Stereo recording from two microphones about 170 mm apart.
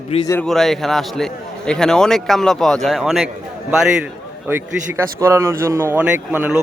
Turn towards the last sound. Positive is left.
turn(degrees=-10)  # may be behind; listen again after turning